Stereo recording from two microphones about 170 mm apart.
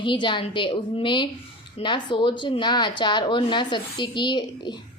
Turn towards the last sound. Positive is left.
turn(degrees=25)  # may be behind; listen again after turning